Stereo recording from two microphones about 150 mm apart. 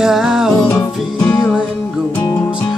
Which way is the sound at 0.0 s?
5° right (ahead or behind).